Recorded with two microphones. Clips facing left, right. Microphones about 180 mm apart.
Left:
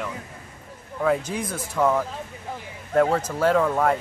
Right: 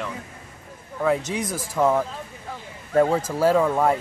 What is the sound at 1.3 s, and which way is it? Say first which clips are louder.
Speech: right 2 dB; 90° right.